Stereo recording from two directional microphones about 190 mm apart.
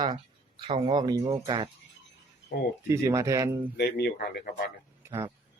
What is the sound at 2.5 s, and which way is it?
Speech, 55° left (ahead or behind).